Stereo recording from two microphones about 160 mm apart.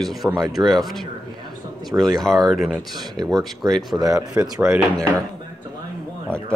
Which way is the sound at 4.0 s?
20° right (ahead or behind).